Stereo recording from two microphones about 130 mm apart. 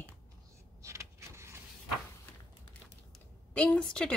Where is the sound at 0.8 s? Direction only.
20° right (ahead or behind).